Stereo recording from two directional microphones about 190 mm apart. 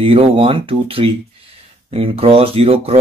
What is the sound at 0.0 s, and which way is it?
Speech, 30° right (ahead or behind).